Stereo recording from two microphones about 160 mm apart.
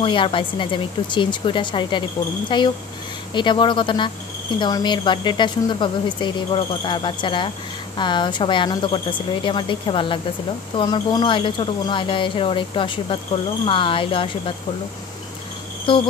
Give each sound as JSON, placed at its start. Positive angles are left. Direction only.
{"t": 0.0, "sound": "speech", "side_deg": 30}